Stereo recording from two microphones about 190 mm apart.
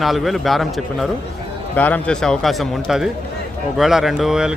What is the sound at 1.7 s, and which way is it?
A man's voice, 10° left (ahead or behind).